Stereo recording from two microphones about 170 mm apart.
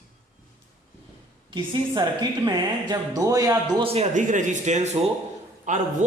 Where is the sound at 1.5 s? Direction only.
25° right (ahead or behind).